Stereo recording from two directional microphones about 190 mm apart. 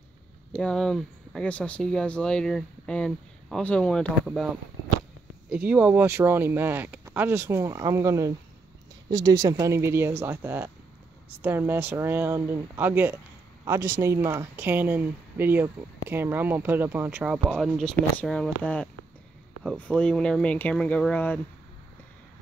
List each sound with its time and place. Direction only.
0.6 s speech: 5° left (ahead or behind)
5.5 s speech: 5° right (ahead or behind); by 21.4 s 10° left (ahead or behind)